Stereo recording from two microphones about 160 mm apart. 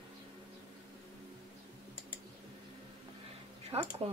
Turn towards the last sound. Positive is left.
turn(degrees=-40)  # may be behind; listen again after turning